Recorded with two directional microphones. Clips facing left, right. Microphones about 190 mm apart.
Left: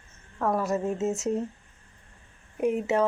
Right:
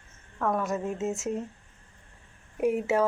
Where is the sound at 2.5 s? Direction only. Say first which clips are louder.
Even; 5° right (ahead or behind).